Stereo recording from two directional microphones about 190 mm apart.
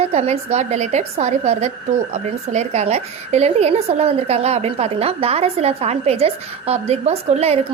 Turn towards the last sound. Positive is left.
turn(degrees=-35)  # may be behind; listen again after turning